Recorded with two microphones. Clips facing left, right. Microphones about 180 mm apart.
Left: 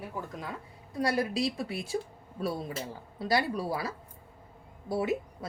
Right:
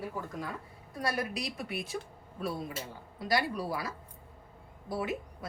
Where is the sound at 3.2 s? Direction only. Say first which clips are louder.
Left 2 dB; 25° left (ahead or behind).